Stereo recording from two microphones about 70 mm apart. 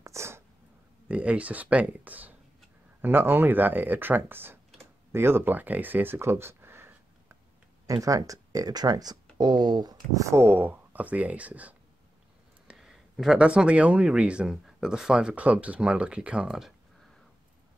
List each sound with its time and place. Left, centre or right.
0.0 s a sound: right
1.0 s speech: centre; by 6.9 s right
7.8 s speech: right
9.4 s speech: right
10.2 s speech: right
12.7 s speech: centre